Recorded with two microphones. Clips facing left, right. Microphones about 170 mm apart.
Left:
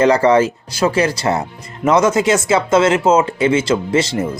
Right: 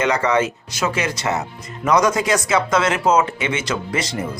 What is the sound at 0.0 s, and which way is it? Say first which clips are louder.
Speech: left 7 dB; 30° left (ahead or behind).